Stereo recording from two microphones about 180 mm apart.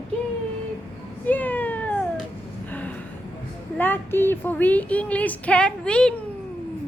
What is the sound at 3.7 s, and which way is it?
Speech, 10° left (ahead or behind).